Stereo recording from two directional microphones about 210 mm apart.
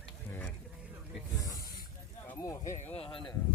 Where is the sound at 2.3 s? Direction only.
15° left (ahead or behind).